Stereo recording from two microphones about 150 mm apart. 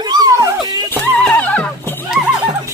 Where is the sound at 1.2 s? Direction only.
10° left (ahead or behind).